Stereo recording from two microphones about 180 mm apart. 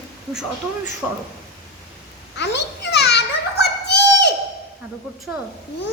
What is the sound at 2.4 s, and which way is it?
Children playing, 75° left (ahead or behind).